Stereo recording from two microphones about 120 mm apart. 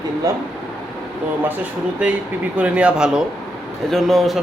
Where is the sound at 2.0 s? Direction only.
10° right (ahead or behind).